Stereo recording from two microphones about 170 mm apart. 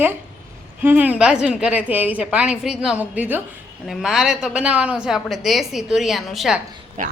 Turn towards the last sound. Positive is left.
turn(degrees=-50)  # may be behind; listen again after turning